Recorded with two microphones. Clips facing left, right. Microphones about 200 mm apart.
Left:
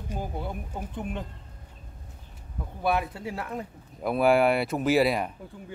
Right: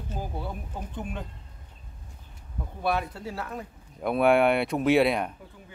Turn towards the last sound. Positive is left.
turn(degrees=0)  # may be behind; listen again after turning